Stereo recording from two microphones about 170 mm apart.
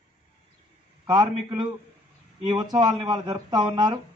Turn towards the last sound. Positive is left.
turn(degrees=-25)  # may be behind; listen again after turning